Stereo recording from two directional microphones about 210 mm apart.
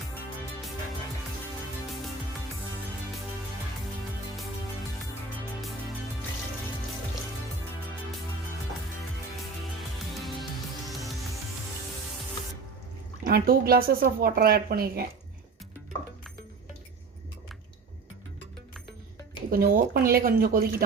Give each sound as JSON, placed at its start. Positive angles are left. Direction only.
{"t": 9.7, "sound": "music", "side_deg": 0}
{"t": 13.2, "sound": "speech", "side_deg": -45}
{"t": 19.5, "sound": "speech", "side_deg": -45}